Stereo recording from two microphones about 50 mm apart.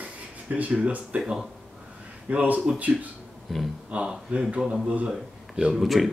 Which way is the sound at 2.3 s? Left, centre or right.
Right.